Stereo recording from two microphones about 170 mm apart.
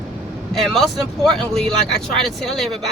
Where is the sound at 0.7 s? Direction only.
Centre (ahead or behind).